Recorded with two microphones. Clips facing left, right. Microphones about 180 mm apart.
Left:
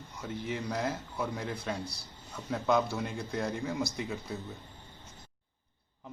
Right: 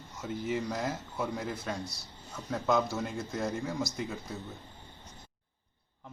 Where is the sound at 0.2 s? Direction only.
Centre (ahead or behind).